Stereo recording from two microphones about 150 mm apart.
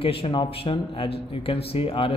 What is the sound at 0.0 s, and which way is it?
Speech, 35° left (ahead or behind).